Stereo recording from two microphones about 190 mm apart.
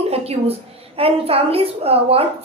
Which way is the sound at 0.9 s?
30° right (ahead or behind).